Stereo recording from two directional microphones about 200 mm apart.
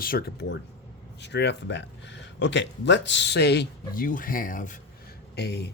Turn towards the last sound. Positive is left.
turn(degrees=55)  # may be behind; listen again after turning